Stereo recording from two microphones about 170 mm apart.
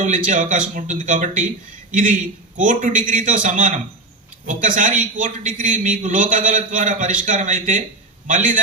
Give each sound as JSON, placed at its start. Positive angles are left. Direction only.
{"t": 0.3, "sound": "a man's voice", "side_deg": -50}